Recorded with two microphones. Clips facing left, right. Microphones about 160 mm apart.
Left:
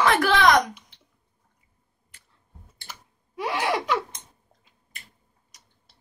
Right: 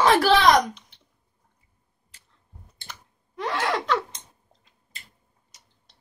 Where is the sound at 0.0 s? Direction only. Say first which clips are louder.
Right 3 dB; 30° right (ahead or behind).